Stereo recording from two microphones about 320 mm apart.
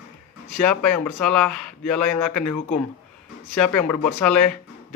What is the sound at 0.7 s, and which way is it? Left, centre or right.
Speech, left.